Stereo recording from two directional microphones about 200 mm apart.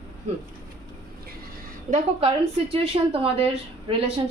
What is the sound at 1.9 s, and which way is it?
Speech, 30° right (ahead or behind).